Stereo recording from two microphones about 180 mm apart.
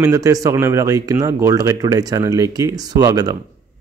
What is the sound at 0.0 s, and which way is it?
Speech, 15° right (ahead or behind).